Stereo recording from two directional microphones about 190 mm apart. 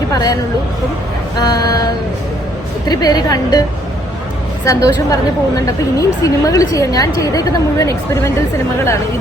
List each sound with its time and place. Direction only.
0.1 s hubbub: 20° left (ahead or behind)
1.4 s a woman's voice: 20° left (ahead or behind)
2.8 s a woman's voice: 20° left (ahead or behind)
4.6 s a woman's voice: 15° left (ahead or behind)